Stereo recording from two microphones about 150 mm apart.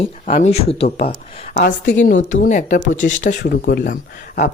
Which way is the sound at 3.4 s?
90° left.